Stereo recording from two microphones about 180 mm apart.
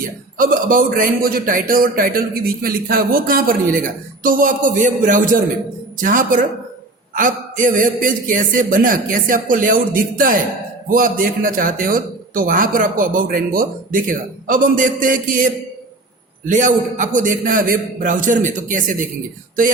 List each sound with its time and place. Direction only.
0.0 s a man's voice: 50° right (ahead or behind)
16.5 s a man's voice: 45° right (ahead or behind)